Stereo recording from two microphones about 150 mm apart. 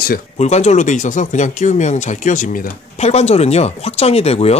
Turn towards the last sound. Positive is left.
turn(degrees=45)  # may be behind; listen again after turning